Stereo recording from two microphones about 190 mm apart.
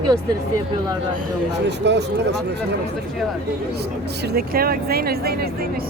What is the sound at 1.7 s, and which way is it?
Speech, 65° right (ahead or behind).